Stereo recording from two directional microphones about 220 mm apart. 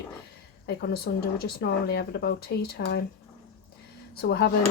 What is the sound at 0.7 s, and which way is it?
Dishes, 45° left (ahead or behind).